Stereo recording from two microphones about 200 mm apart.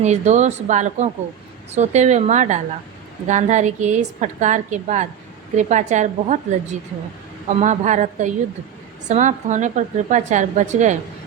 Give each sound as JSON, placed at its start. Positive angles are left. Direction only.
{"t": 0.0, "sound": "a woman's voice", "side_deg": -35}